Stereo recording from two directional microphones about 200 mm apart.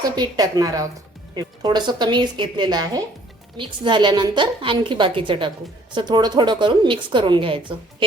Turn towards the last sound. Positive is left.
turn(degrees=-25)  # may be behind; listen again after turning